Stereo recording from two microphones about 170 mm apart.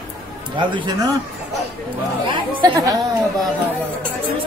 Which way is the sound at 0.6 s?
25° right (ahead or behind).